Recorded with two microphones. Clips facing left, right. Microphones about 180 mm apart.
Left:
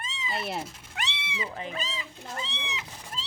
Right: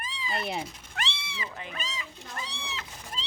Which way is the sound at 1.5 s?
30° left (ahead or behind).